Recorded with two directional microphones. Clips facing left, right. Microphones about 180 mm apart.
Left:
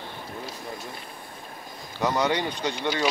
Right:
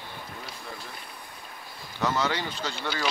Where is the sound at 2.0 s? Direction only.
15° left (ahead or behind).